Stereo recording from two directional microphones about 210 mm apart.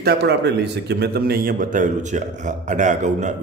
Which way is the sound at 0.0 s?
50° right (ahead or behind).